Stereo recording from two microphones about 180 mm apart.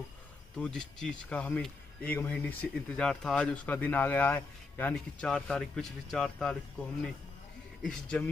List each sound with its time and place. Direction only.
0.6 s speech: 5° left (ahead or behind)